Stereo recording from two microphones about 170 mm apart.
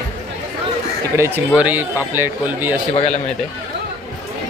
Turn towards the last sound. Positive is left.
turn(degrees=40)  # may be behind; listen again after turning